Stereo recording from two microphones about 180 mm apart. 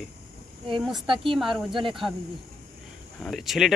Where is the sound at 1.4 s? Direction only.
Centre (ahead or behind).